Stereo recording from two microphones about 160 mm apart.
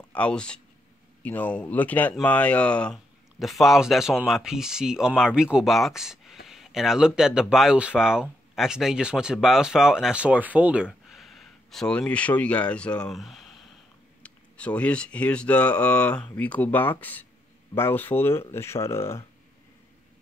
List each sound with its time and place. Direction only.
0.1 s speech: 5° left (ahead or behind)